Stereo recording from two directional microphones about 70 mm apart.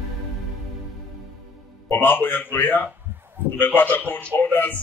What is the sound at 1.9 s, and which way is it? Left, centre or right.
A man's voice, left.